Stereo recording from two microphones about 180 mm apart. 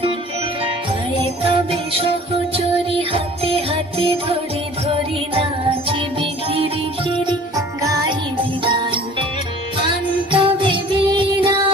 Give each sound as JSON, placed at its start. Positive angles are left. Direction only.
{"t": 1.2, "sound": "jingle bell", "side_deg": -30}
{"t": 2.6, "sound": "music", "side_deg": -30}
{"t": 5.9, "sound": "music", "side_deg": -30}
{"t": 8.6, "sound": "music", "side_deg": -30}
{"t": 10.3, "sound": "music", "side_deg": -30}